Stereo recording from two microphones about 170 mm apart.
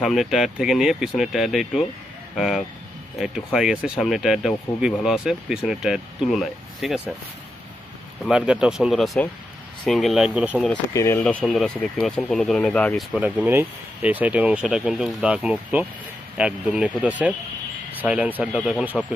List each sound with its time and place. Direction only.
0.0 s speech: centre (ahead or behind)
8.2 s speech: 5° right (ahead or behind)
10.9 s speech: 15° left (ahead or behind)
11.2 s speech: centre (ahead or behind)
13.1 s speech: 10° right (ahead or behind)